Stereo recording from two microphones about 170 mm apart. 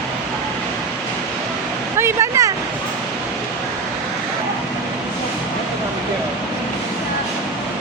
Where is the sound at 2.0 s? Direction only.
15° right (ahead or behind).